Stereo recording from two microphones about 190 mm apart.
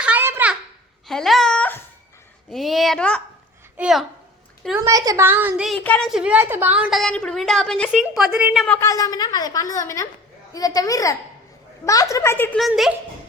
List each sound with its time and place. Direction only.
0.0 s a sound: 10° right (ahead or behind)
1.0 s babbling: centre (ahead or behind)
2.5 s a woman's voice: centre (ahead or behind)
4.8 s a woman's voice: 20° right (ahead or behind)
8.5 s a woman's voice: 10° left (ahead or behind)